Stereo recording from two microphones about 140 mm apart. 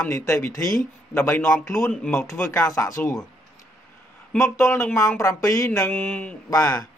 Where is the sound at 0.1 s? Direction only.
20° left (ahead or behind).